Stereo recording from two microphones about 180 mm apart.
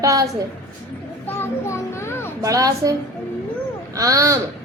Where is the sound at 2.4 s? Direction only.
20° right (ahead or behind).